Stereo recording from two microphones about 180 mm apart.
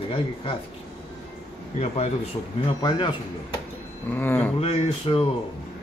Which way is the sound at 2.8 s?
25° left (ahead or behind).